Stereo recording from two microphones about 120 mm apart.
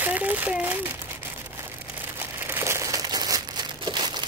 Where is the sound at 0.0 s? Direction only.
15° right (ahead or behind).